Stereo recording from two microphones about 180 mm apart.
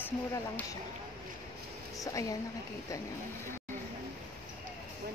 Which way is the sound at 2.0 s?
20° left (ahead or behind).